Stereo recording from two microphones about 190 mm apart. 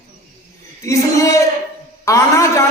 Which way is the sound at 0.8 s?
15° left (ahead or behind).